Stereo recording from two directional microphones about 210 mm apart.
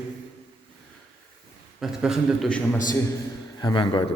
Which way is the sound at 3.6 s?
20° left (ahead or behind).